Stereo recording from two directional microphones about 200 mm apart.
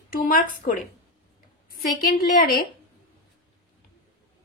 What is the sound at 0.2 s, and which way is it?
A woman's voice, 45° left (ahead or behind).